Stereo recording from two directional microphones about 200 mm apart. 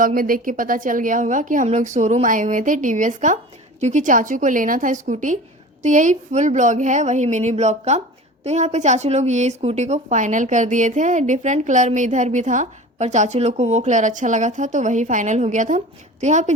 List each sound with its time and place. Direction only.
0.0 s a woman's voice: 45° right (ahead or behind)